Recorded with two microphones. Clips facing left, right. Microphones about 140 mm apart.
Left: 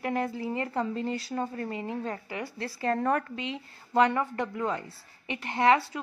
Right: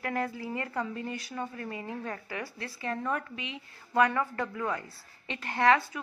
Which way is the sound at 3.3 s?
35° left (ahead or behind).